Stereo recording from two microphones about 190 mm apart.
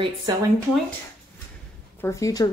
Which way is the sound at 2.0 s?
15° left (ahead or behind).